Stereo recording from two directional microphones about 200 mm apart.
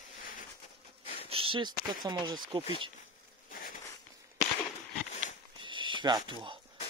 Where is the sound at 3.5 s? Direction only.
45° left (ahead or behind).